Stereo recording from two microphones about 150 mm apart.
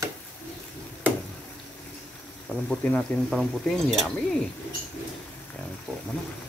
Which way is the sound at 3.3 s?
5° right (ahead or behind).